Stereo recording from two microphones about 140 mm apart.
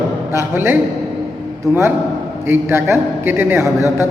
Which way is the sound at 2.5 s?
15° right (ahead or behind).